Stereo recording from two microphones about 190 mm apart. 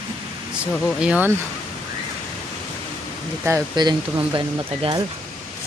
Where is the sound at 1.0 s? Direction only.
10° right (ahead or behind).